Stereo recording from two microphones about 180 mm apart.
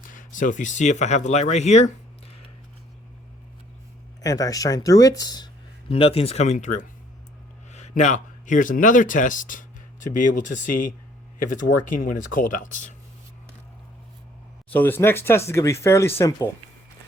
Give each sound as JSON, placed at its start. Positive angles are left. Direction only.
{"t": 0.1, "sound": "speech", "side_deg": 45}
{"t": 4.2, "sound": "speech", "side_deg": 20}
{"t": 5.9, "sound": "speech", "side_deg": 35}
{"t": 14.7, "sound": "speech", "side_deg": 10}